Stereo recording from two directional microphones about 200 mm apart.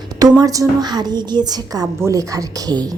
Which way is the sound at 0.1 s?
20° right (ahead or behind).